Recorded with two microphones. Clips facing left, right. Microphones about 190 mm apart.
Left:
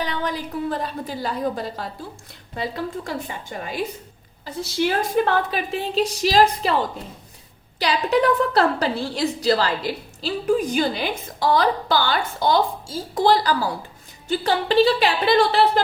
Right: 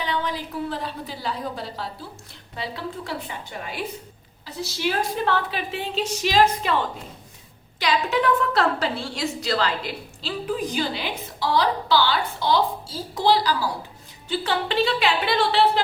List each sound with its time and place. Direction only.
0.0 s a woman's voice: 45° left (ahead or behind)
5.1 s a woman's voice: 50° left (ahead or behind)
7.8 s a woman's voice: 35° left (ahead or behind); by 13.7 s 50° left (ahead or behind)
14.3 s a woman's voice: 40° left (ahead or behind)